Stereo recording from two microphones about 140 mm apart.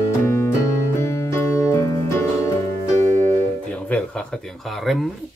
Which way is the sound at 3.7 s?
10° left (ahead or behind).